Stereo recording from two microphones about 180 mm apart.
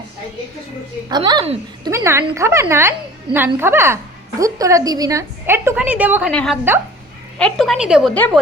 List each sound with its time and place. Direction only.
1.1 s a woman's voice: 25° right (ahead or behind)
6.3 s a woman's voice: 5° left (ahead or behind)